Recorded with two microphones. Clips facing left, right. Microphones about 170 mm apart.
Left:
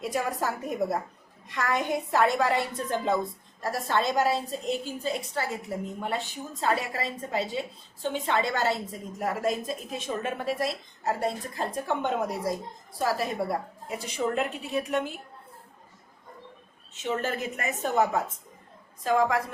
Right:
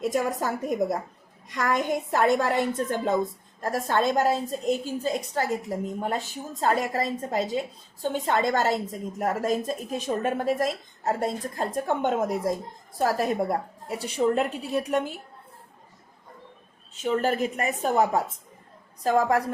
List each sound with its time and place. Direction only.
0.0 s a woman's voice: 45° right (ahead or behind)
17.2 s a woman's voice: 35° right (ahead or behind)